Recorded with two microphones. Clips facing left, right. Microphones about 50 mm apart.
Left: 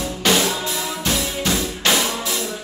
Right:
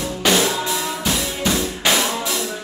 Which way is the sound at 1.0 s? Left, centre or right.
Centre.